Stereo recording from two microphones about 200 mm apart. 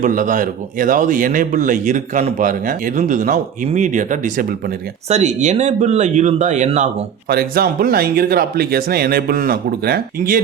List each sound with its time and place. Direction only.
0.0 s a man's voice: 40° right (ahead or behind)
7.3 s speech: 50° right (ahead or behind)